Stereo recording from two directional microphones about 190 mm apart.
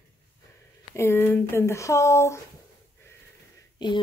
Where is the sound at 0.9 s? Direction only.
10° left (ahead or behind).